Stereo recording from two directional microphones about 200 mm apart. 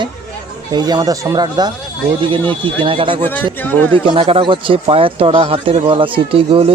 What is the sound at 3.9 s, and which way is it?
Speech, 25° right (ahead or behind).